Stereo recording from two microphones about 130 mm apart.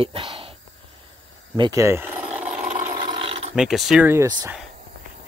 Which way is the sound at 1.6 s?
25° right (ahead or behind).